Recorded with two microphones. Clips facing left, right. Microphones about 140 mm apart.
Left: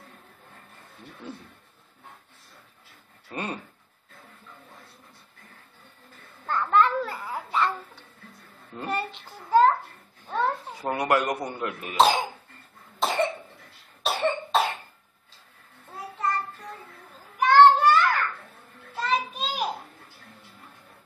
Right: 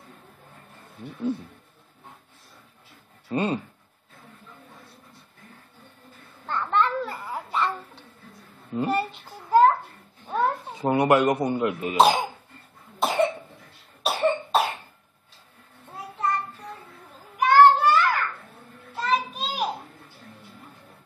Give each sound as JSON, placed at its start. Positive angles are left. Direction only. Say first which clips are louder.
{"t": 3.3, "sound": "speech", "louder": "right 8 dB", "side_deg": -25}
{"t": 6.4, "sound": "babbling", "louder": "left 2 dB", "side_deg": 0}
{"t": 8.7, "sound": "a sound", "louder": "right 6 dB", "side_deg": -5}
{"t": 10.7, "sound": "speech", "louder": "right 8 dB", "side_deg": -20}
{"t": 12.0, "sound": "speech", "louder": "right 2 dB", "side_deg": 0}
{"t": 13.0, "sound": "cough", "louder": "right 3 dB", "side_deg": -5}
{"t": 17.4, "sound": "a sound", "louder": "even", "side_deg": -5}